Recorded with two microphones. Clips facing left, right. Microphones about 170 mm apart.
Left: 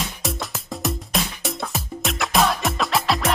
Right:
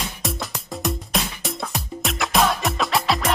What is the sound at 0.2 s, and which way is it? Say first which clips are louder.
Music: even; centre (ahead or behind).